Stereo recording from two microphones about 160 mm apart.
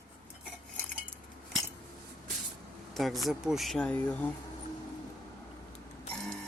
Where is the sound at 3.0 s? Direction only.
Centre (ahead or behind).